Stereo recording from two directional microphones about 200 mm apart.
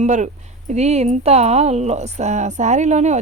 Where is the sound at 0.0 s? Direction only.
35° right (ahead or behind).